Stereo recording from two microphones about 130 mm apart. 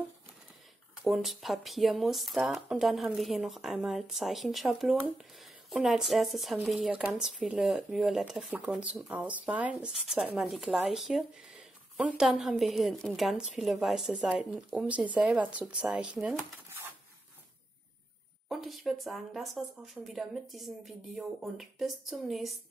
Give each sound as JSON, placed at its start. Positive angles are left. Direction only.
{"t": 1.0, "sound": "speech", "side_deg": 0}
{"t": 16.6, "sound": "a sound", "side_deg": -20}
{"t": 18.5, "sound": "speech", "side_deg": 0}